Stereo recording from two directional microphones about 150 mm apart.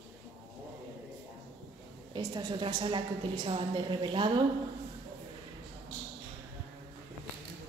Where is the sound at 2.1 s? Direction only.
30° right (ahead or behind).